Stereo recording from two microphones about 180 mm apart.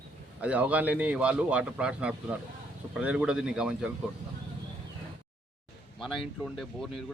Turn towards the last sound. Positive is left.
turn(degrees=0)  # may be behind; listen again after turning